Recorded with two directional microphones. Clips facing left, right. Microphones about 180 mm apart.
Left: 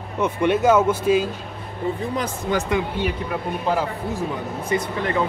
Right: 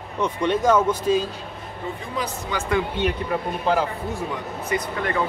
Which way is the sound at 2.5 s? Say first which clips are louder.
Left 7 dB; 50° left (ahead or behind).